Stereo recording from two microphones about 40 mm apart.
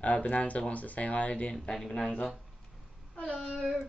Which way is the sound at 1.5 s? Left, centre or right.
Centre.